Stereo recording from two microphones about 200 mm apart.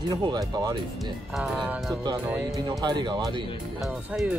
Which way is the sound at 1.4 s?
5° right (ahead or behind).